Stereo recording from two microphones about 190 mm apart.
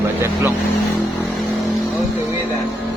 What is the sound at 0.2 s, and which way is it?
Speech, 15° right (ahead or behind).